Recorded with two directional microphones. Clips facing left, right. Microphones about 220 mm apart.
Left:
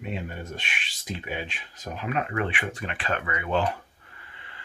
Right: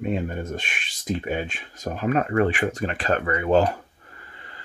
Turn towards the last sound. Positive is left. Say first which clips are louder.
# right 4 dB
turn(degrees=-40)  # may be behind; listen again after turning